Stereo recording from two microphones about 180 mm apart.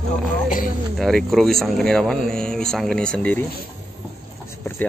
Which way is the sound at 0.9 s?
Centre (ahead or behind).